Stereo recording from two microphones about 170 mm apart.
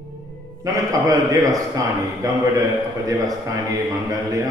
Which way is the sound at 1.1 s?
20° right (ahead or behind).